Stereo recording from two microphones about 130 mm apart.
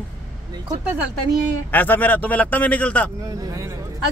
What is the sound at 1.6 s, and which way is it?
A man's voice, 15° left (ahead or behind).